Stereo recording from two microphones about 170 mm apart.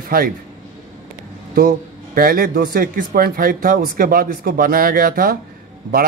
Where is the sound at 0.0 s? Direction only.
60° right (ahead or behind).